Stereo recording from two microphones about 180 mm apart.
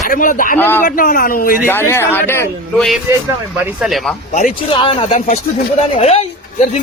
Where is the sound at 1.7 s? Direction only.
15° left (ahead or behind).